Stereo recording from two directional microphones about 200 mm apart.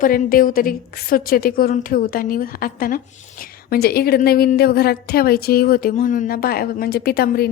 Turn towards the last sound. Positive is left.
turn(degrees=50)  # may be behind; listen again after turning